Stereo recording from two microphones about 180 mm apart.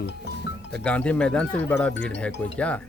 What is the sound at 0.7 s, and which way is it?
Speech, 5° left (ahead or behind).